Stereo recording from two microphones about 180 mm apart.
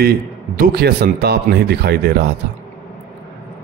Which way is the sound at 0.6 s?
60° right (ahead or behind).